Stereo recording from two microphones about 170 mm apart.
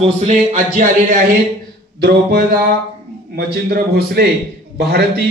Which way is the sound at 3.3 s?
60° right (ahead or behind).